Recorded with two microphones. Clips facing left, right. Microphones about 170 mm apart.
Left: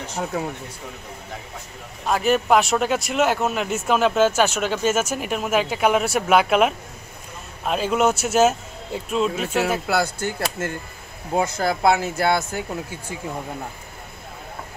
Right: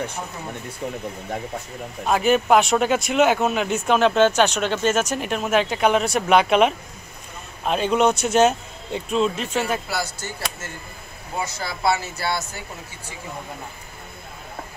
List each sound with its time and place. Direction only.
2.0 s speech: centre (ahead or behind)
9.8 s speech: 55° left (ahead or behind)